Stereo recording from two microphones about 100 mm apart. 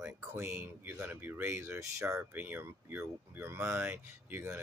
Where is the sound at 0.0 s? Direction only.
25° right (ahead or behind).